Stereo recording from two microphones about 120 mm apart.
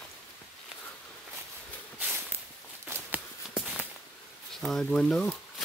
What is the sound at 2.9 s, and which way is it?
Run, 15° right (ahead or behind).